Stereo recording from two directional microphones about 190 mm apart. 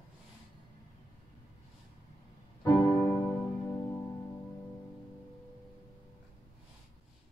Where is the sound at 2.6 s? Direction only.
20° left (ahead or behind).